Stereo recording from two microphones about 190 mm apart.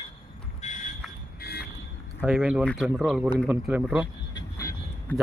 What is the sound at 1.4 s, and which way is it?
Vehicle, 55° left (ahead or behind).